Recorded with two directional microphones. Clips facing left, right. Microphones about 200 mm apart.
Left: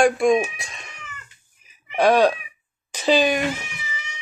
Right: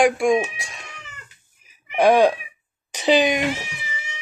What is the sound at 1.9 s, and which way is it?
Speech, 15° right (ahead or behind).